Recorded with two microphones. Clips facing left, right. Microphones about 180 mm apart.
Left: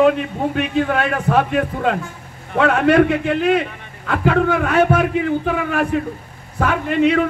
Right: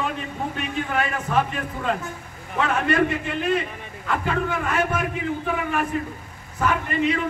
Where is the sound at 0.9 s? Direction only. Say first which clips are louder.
Left 7 dB; 70° left (ahead or behind).